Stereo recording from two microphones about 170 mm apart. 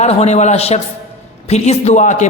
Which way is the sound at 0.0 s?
40° left (ahead or behind).